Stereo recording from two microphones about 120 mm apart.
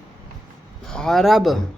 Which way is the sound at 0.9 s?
5° left (ahead or behind).